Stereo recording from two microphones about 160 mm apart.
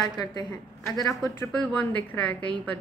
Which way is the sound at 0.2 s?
25° left (ahead or behind).